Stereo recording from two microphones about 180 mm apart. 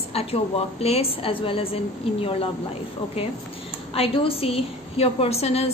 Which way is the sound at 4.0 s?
30° left (ahead or behind).